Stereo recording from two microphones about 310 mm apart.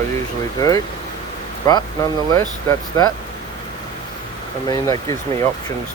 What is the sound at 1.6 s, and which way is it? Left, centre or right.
Speech, centre.